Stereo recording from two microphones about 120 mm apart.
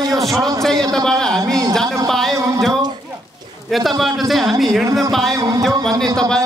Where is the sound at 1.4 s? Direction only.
30° right (ahead or behind).